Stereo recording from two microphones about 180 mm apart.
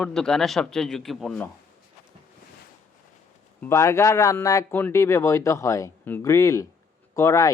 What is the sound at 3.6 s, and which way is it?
Speech, 15° left (ahead or behind).